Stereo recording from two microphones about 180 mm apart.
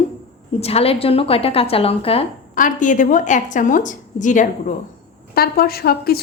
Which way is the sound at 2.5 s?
45° left (ahead or behind).